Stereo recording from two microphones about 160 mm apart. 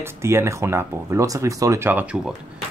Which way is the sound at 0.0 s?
15° right (ahead or behind).